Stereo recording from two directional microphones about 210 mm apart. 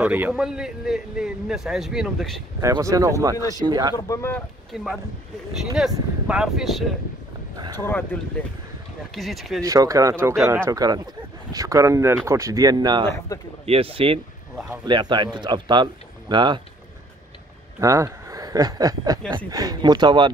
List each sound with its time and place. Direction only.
0.0 s a man's voice: 5° right (ahead or behind)
2.6 s speech: 15° right (ahead or behind)
3.9 s speech: 15° left (ahead or behind)
4.7 s a man's voice: centre (ahead or behind)
7.5 s speech: 20° right (ahead or behind)
7.8 s a man's voice: 10° left (ahead or behind)
9.6 s speech: 15° right (ahead or behind)
13.3 s speech: 15° left (ahead or behind)
13.7 s speech: 25° right (ahead or behind)
17.7 s speech: 15° right (ahead or behind)